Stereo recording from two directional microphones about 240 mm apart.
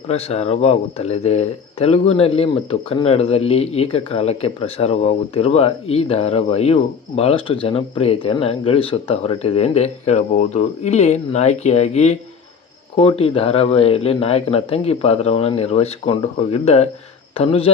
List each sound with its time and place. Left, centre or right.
0.1 s speech: left